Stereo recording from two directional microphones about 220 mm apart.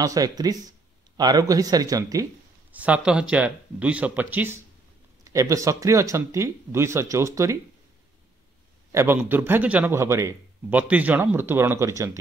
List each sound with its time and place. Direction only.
0.0 s speech: 15° right (ahead or behind)
8.9 s speech: 10° right (ahead or behind)